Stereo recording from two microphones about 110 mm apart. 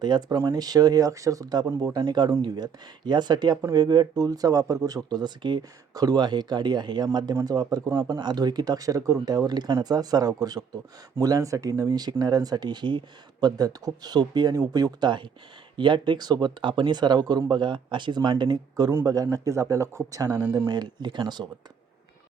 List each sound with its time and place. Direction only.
0.0 s speech: 40° right (ahead or behind)
18.9 s speech: 30° right (ahead or behind)